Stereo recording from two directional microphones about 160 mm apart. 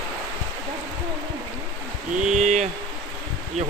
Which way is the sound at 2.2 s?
45° right (ahead or behind).